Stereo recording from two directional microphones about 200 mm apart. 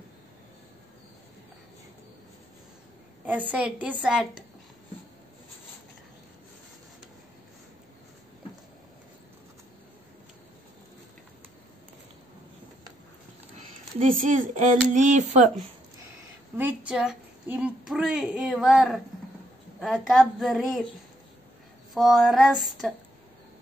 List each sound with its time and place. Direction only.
3.3 s a woman's voice: 5° right (ahead or behind)
13.6 s speech: 40° right (ahead or behind)
16.5 s a woman's voice: 5° right (ahead or behind)
21.9 s a woman's voice: centre (ahead or behind)